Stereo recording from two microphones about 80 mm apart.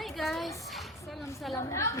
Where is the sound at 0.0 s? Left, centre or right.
Centre.